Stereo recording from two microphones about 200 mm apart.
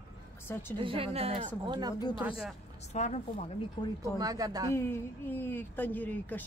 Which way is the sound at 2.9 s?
35° left (ahead or behind).